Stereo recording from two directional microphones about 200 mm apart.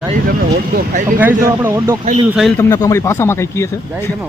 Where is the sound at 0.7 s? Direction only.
40° right (ahead or behind).